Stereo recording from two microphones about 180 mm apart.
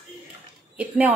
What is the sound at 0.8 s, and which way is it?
Speech, 10° right (ahead or behind).